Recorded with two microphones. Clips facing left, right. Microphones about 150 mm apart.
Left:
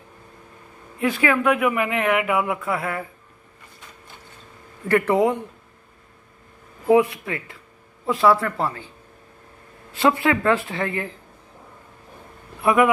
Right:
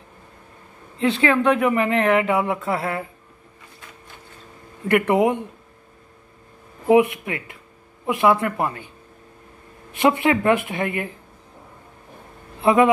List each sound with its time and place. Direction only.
0.9 s speech: 25° right (ahead or behind)
4.8 s speech: 20° right (ahead or behind)
6.9 s speech: 20° right (ahead or behind)
9.9 s speech: 20° right (ahead or behind)
12.5 s speech: 25° right (ahead or behind)